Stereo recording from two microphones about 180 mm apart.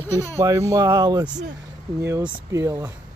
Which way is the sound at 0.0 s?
15° left (ahead or behind).